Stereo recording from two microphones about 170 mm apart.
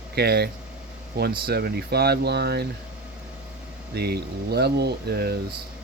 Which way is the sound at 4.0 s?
70° right (ahead or behind).